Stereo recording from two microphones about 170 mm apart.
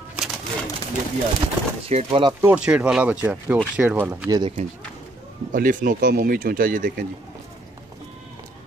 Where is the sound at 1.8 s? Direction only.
35° right (ahead or behind).